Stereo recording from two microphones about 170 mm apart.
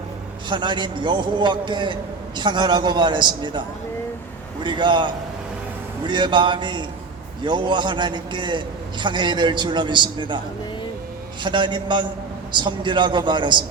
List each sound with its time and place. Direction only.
0.4 s a man's voice: 25° right (ahead or behind)
4.6 s a man's voice: 25° right (ahead or behind)
11.4 s a man's voice: 25° right (ahead or behind)